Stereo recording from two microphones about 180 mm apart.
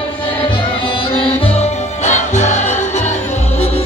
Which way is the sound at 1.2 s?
35° left (ahead or behind).